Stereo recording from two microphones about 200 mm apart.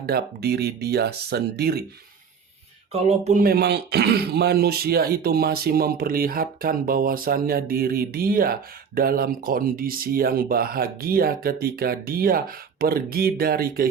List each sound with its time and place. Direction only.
0.0 s speech: 50° right (ahead or behind)
2.9 s speech: 35° right (ahead or behind)
3.4 s speech: 50° right (ahead or behind)